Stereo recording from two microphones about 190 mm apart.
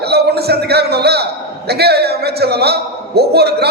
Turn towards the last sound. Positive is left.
turn(degrees=-55)  # may be behind; listen again after turning